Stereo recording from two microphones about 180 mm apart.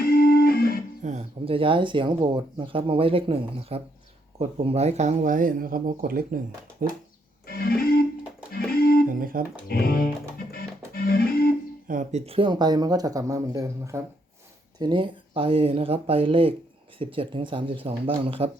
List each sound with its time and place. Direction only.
0.0 s music: 55° left (ahead or behind)
1.0 s speech: 40° right (ahead or behind)
7.4 s music: 55° left (ahead or behind)
9.0 s a sound: 50° right (ahead or behind)
9.6 s music: 55° left (ahead or behind)
11.9 s speech: 40° right (ahead or behind)